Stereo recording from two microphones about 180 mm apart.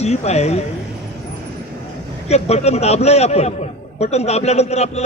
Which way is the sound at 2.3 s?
35° left (ahead or behind).